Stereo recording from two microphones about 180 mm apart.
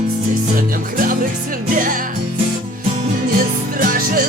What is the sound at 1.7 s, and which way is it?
Music, 50° right (ahead or behind).